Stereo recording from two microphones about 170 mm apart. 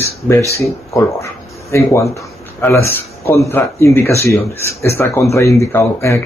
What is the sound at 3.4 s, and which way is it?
Speech, 15° left (ahead or behind).